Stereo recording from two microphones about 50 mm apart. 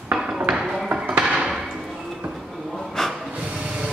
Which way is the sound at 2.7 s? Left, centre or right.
Centre.